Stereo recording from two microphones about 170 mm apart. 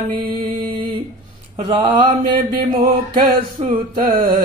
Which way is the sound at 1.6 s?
30° right (ahead or behind).